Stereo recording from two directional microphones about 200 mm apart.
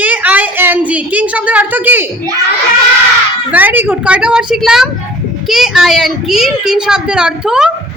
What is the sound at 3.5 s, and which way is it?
A woman's voice, 10° right (ahead or behind).